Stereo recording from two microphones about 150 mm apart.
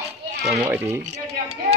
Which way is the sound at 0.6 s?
15° right (ahead or behind).